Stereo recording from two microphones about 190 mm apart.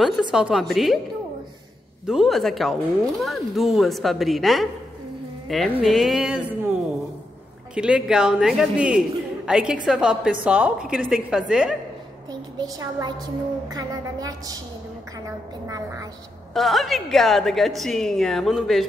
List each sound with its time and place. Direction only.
0.0 s speech: 5° right (ahead or behind)
2.0 s speech: centre (ahead or behind)
5.8 s speech: centre (ahead or behind)
7.7 s speech: 5° right (ahead or behind)
12.3 s a woman's voice: 20° right (ahead or behind)
15.2 s music: 15° right (ahead or behind)
16.5 s speech: centre (ahead or behind)